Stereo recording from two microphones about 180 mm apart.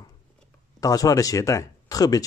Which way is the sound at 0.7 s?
20° left (ahead or behind).